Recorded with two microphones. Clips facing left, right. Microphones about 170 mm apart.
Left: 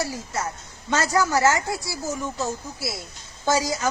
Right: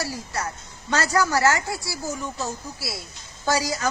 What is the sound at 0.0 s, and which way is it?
A woman's voice, 20° left (ahead or behind).